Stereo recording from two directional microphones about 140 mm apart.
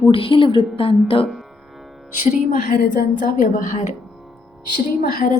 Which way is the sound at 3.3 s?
90° left.